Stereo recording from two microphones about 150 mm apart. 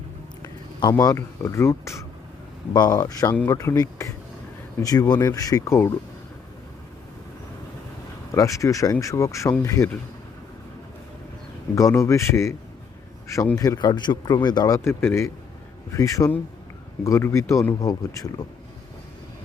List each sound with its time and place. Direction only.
0.8 s a man's voice: 25° left (ahead or behind)
8.3 s a man's voice: 20° left (ahead or behind)
11.7 s a man's voice: 20° left (ahead or behind)